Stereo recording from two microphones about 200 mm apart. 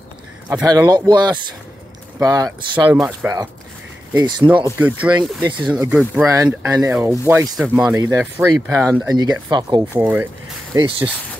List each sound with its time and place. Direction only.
0.7 s speech: 20° right (ahead or behind)
4.7 s speech: 5° right (ahead or behind)
6.2 s speech: 15° right (ahead or behind)
9.8 s speech: 10° right (ahead or behind)